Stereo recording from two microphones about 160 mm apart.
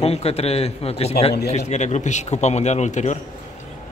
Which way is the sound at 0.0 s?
40° left (ahead or behind).